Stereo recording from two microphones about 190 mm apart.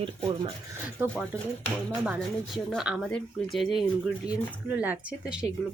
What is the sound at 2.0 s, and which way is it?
Speech, 5° right (ahead or behind).